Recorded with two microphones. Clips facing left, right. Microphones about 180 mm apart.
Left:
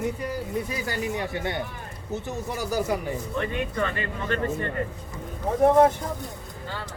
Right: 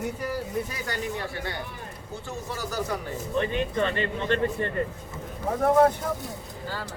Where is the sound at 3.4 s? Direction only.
25° right (ahead or behind).